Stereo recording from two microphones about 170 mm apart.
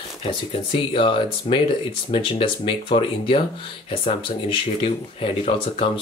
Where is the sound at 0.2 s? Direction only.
35° left (ahead or behind).